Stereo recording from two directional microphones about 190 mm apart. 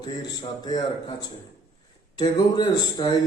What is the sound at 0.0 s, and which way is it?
A man's voice, 20° left (ahead or behind).